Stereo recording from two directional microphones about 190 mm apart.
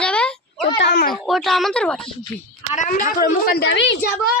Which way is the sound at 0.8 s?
65° left (ahead or behind).